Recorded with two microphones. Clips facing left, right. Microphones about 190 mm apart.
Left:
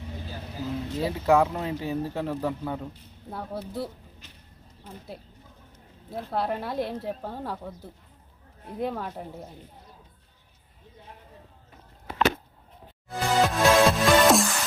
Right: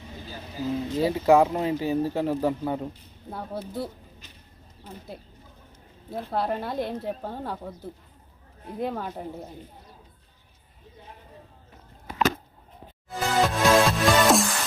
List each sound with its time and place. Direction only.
0.5 s a man's voice: centre (ahead or behind); by 2.9 s 20° right (ahead or behind)
3.2 s speech: centre (ahead or behind)
6.1 s speech: centre (ahead or behind)
13.1 s music: centre (ahead or behind)